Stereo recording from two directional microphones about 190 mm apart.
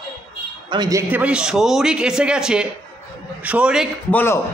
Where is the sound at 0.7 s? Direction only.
20° right (ahead or behind); by 3.9 s 5° right (ahead or behind).